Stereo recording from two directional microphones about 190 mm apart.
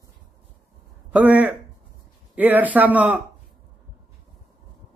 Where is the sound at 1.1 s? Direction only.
10° right (ahead or behind).